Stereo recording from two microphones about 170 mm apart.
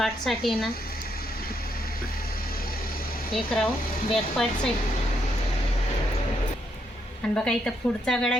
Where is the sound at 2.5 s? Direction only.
60° left (ahead or behind).